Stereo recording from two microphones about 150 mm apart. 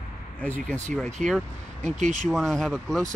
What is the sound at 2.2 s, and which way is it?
Speech, 5° left (ahead or behind).